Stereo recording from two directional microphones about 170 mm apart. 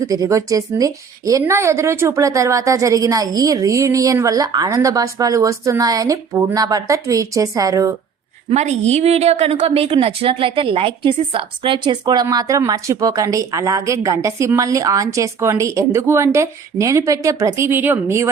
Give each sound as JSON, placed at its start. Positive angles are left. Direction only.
{"t": 0.0, "sound": "a woman's voice", "side_deg": -20}
{"t": 8.4, "sound": "a woman's voice", "side_deg": -40}